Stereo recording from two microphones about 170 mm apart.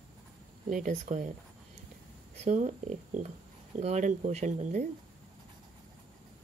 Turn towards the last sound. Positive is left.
turn(degrees=-45)  # may be behind; listen again after turning